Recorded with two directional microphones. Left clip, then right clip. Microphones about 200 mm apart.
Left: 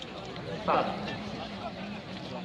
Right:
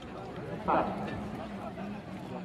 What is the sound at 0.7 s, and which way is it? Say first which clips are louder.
Speech: left 1 dB; 30° left (ahead or behind).